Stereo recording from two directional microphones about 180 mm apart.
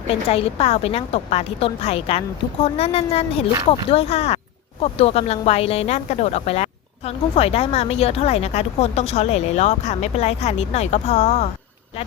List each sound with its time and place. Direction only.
0.1 s speech: 35° left (ahead or behind)